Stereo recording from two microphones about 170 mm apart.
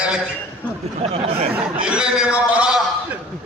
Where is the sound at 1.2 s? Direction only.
35° right (ahead or behind).